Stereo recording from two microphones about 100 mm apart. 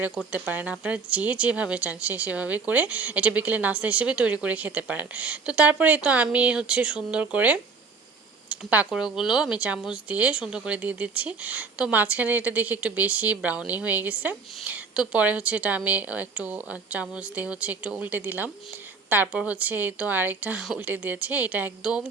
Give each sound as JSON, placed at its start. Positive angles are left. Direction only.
{"t": 0.3, "sound": "speech", "side_deg": -15}